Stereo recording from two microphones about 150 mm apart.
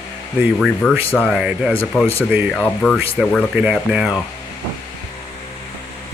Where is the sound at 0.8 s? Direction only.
10° left (ahead or behind).